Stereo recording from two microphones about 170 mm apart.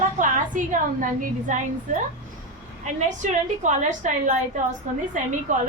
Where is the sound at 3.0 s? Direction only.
45° right (ahead or behind).